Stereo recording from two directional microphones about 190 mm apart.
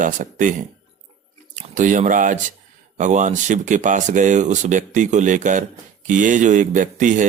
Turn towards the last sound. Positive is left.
turn(degrees=-40)  # may be behind; listen again after turning